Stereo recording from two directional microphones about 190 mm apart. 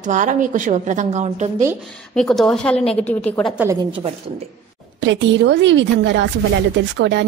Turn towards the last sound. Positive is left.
turn(degrees=-70)  # may be behind; listen again after turning